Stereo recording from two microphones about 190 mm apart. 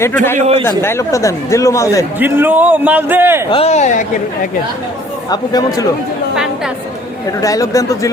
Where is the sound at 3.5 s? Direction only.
35° left (ahead or behind).